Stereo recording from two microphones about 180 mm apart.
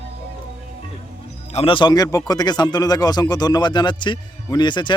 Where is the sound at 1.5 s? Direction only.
30° left (ahead or behind).